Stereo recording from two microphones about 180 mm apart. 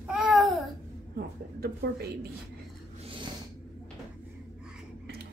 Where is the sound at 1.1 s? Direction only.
60° right (ahead or behind).